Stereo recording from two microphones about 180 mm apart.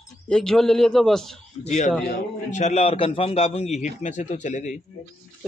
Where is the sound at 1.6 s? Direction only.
40° left (ahead or behind).